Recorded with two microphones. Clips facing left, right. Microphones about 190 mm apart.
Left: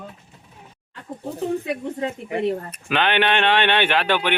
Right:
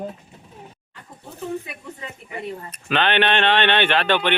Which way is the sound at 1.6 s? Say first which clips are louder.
Left 11 dB; 70° left (ahead or behind).